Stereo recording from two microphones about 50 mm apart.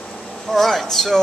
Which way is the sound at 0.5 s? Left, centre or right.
Centre.